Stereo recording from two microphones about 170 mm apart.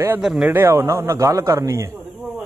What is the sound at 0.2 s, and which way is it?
Speech, 5° right (ahead or behind).